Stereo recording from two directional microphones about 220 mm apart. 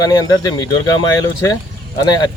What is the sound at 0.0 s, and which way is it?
Speech, 15° left (ahead or behind).